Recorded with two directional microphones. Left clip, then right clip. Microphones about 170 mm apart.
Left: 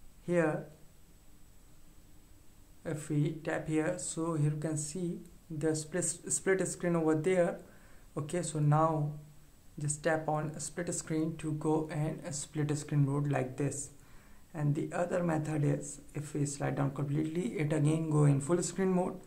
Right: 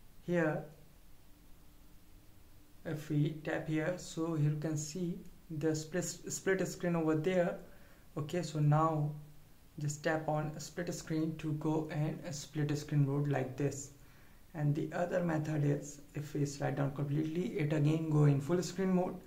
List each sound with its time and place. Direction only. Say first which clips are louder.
0.3 s speech: left 4 dB; 30° left (ahead or behind)
2.8 s speech: left 2 dB; 30° left (ahead or behind)